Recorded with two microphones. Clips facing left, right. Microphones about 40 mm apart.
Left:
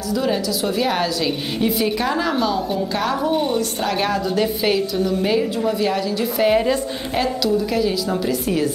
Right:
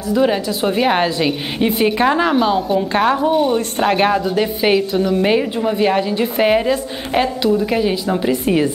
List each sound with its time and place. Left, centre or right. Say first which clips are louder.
0.1 s a woman's voice: right 5 dB; right
3.2 s a woman's voice: right 5 dB; centre
3.5 s a woman's voice: right 5 dB; right